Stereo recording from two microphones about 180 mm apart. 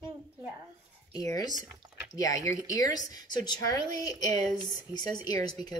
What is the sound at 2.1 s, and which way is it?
Speech, 20° left (ahead or behind).